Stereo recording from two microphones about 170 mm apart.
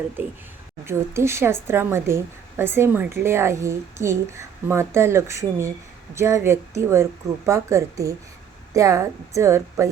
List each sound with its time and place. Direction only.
0.9 s a woman's voice: 15° right (ahead or behind)